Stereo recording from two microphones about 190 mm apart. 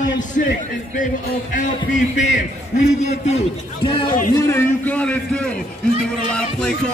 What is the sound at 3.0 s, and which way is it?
Speech, 35° left (ahead or behind).